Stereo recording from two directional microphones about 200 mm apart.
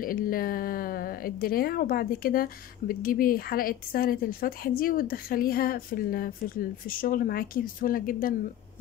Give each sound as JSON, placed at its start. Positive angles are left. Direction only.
{"t": 0.0, "sound": "speech", "side_deg": 45}